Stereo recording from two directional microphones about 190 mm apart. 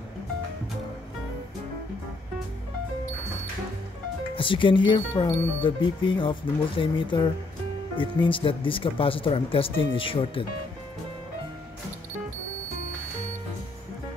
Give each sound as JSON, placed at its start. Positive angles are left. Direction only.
{"t": 4.4, "sound": "speech", "side_deg": 25}